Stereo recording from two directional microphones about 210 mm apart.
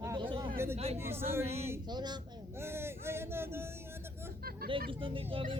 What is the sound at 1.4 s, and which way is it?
Speech, 30° right (ahead or behind).